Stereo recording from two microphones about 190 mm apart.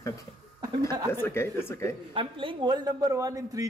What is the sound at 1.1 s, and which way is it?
Speech, 10° left (ahead or behind).